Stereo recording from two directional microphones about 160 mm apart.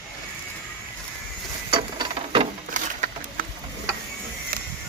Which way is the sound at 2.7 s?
55° right (ahead or behind).